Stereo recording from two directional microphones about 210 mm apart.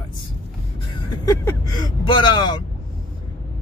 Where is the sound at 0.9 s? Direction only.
15° left (ahead or behind).